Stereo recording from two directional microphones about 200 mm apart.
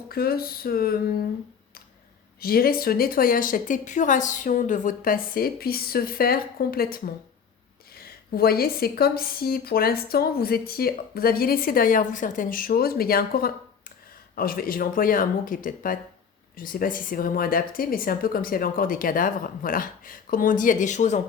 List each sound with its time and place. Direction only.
0.1 s speech: 50° left (ahead or behind)
2.4 s speech: 50° left (ahead or behind)